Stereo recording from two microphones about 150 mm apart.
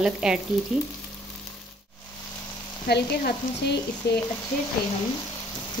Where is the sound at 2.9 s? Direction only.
90° left.